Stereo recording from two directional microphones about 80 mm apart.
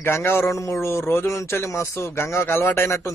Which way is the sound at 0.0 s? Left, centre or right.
Left.